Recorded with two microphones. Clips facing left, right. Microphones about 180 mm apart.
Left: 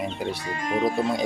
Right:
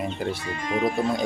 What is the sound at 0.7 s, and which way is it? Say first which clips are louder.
Speech: even; 30° left (ahead or behind).